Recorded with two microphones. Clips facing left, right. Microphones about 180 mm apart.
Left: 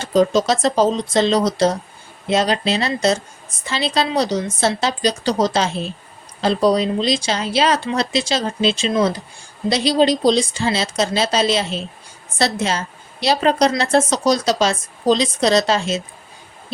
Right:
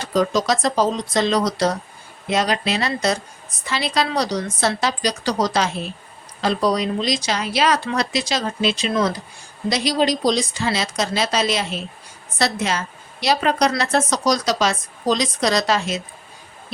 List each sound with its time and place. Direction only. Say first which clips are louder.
0.0 s a woman's voice: left 4 dB; 25° left (ahead or behind)